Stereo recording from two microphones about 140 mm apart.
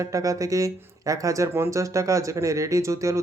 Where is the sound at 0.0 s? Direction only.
25° right (ahead or behind).